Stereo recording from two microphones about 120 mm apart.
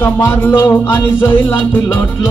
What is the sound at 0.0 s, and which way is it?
Music, 20° left (ahead or behind).